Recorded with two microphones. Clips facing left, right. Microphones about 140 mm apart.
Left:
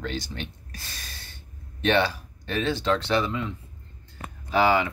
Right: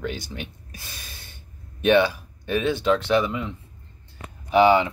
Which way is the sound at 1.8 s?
15° right (ahead or behind).